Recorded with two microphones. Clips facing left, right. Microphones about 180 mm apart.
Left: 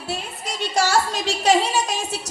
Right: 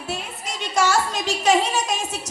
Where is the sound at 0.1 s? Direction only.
35° left (ahead or behind).